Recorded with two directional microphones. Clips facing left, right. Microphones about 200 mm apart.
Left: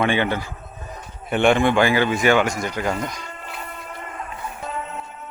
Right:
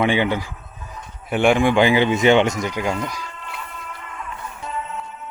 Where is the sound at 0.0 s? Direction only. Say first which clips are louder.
Right 2 dB; 15° right (ahead or behind).